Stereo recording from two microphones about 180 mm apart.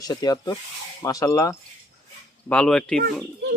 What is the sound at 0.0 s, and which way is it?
Speech, 20° left (ahead or behind).